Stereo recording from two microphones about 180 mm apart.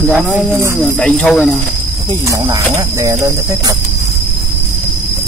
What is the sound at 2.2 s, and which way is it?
Speech, 20° right (ahead or behind).